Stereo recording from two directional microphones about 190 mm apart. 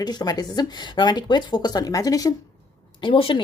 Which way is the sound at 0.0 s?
20° left (ahead or behind).